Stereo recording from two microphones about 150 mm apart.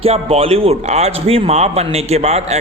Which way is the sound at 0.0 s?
40° right (ahead or behind).